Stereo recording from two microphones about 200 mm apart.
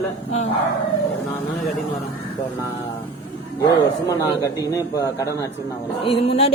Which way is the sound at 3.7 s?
20° left (ahead or behind).